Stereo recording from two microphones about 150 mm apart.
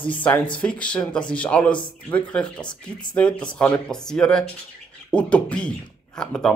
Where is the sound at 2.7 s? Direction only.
30° left (ahead or behind).